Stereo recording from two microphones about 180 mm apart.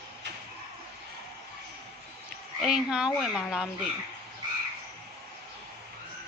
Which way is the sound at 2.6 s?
5° right (ahead or behind).